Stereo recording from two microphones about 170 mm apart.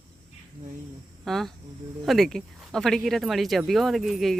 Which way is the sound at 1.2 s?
Centre (ahead or behind).